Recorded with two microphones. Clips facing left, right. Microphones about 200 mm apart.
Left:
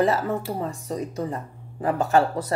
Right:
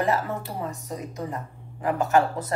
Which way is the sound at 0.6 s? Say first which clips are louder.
Left 4 dB; 30° left (ahead or behind).